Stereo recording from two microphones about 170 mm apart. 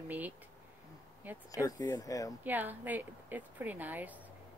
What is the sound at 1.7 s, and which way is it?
Speech, 20° left (ahead or behind).